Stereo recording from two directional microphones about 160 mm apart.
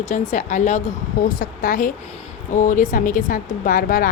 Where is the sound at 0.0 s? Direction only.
50° left (ahead or behind).